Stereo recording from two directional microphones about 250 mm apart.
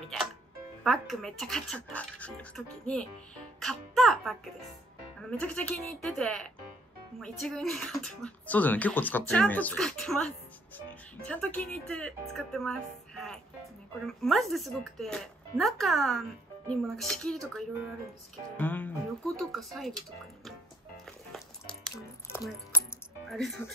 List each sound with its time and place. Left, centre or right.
0.8 s speech: centre
3.5 s music: centre
5.4 s speech: centre
21.9 s squish: centre
23.3 s speech: centre